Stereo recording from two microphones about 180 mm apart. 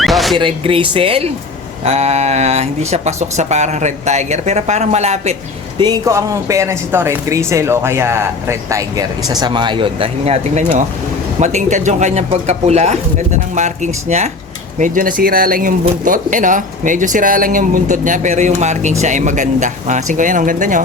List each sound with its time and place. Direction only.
0.0 s zipper: centre (ahead or behind)
0.3 s speech: 30° right (ahead or behind)
5.8 s speech: 20° right (ahead or behind); by 20.8 s 45° right (ahead or behind)